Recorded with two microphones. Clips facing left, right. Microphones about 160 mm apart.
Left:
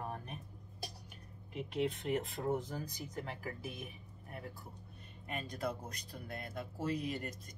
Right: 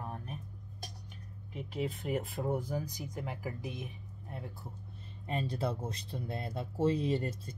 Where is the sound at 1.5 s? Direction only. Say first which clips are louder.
Left 1 dB; centre (ahead or behind).